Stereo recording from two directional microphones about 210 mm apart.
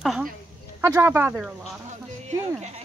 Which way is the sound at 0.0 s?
Centre (ahead or behind).